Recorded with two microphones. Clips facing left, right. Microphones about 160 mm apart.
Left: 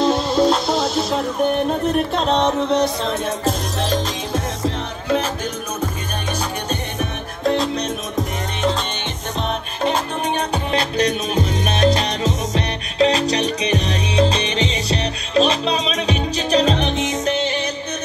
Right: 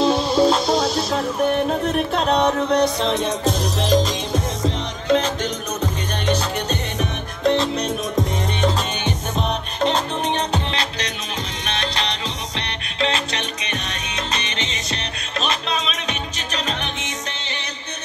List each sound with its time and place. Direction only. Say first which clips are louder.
0.0 s music: even; centre (ahead or behind)
7.4 s music: even; centre (ahead or behind)
9.8 s music: even; 10° left (ahead or behind)
10.8 s music: left 8 dB; 50° left (ahead or behind)